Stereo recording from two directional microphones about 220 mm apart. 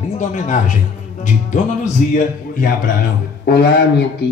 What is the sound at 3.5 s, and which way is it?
Speech, 45° left (ahead or behind).